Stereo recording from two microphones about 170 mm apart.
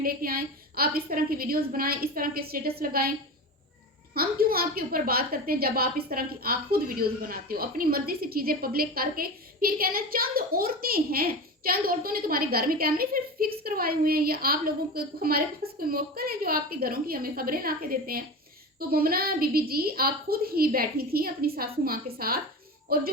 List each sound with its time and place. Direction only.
0.0 s a woman's voice: 60° right (ahead or behind)
4.1 s a woman's voice: 60° right (ahead or behind)
22.9 s a woman's voice: 60° right (ahead or behind)